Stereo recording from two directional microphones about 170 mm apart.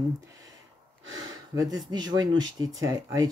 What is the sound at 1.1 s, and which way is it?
Speech, 20° right (ahead or behind).